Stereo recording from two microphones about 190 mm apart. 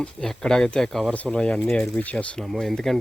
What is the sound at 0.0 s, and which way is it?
Speech, 5° left (ahead or behind).